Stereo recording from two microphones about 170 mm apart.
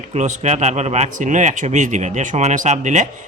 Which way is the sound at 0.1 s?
45° right (ahead or behind).